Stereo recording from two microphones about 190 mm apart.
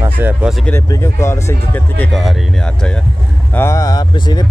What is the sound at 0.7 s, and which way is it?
Speech, 15° left (ahead or behind).